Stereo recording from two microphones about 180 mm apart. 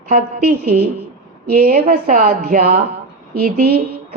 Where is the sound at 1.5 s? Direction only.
55° right (ahead or behind).